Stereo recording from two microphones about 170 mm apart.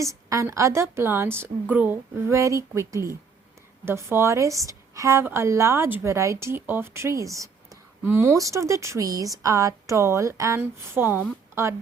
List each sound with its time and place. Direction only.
0.0 s a woman's voice: 20° right (ahead or behind)